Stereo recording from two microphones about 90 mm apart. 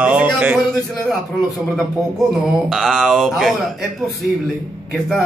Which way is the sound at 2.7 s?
Centre (ahead or behind).